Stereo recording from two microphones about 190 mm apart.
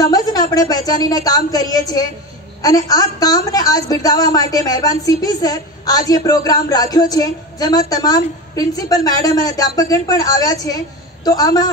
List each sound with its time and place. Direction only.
0.0 s a woman's voice: 20° left (ahead or behind)